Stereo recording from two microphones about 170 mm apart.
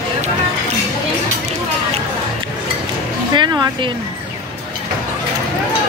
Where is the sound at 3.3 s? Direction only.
25° right (ahead or behind).